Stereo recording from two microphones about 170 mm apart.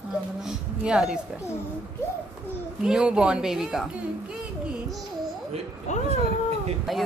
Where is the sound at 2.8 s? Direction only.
5° right (ahead or behind).